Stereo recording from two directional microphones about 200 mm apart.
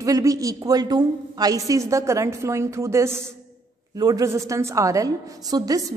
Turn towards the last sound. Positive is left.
turn(degrees=-20)  # may be behind; listen again after turning